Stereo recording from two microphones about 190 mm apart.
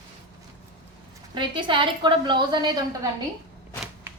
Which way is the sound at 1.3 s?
25° right (ahead or behind).